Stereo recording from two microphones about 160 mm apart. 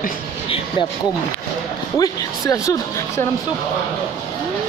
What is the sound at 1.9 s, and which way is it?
Speech, 20° left (ahead or behind).